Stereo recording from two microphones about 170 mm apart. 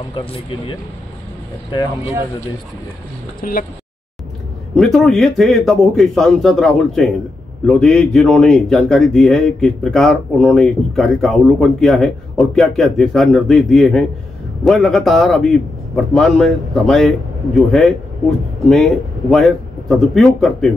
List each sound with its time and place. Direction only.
0.1 s speech: 30° left (ahead or behind)
3.3 s speech: 60° left (ahead or behind)
4.7 s a man's voice: centre (ahead or behind)